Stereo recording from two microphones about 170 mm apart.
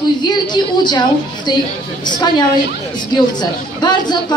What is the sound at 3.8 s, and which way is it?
Speech, 25° left (ahead or behind).